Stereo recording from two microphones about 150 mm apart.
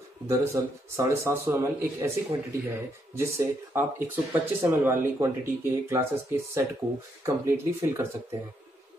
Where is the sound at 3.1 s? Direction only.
15° right (ahead or behind).